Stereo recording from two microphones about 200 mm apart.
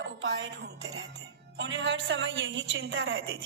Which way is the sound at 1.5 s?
65° right (ahead or behind).